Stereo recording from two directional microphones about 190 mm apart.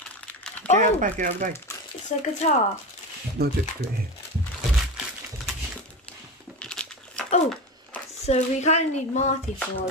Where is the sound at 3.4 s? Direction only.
55° right (ahead or behind).